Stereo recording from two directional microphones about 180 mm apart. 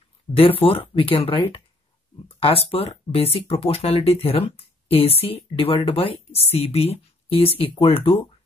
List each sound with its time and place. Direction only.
0.4 s speech: 30° left (ahead or behind)